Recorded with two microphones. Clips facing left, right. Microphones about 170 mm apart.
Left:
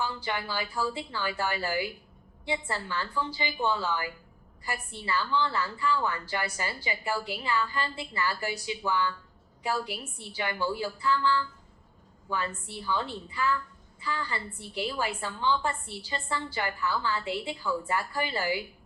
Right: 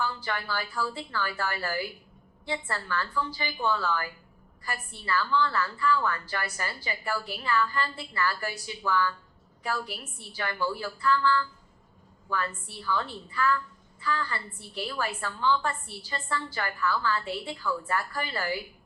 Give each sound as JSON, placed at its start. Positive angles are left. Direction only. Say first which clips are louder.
{"t": 0.0, "sound": "a woman's voice", "louder": "even", "side_deg": 15}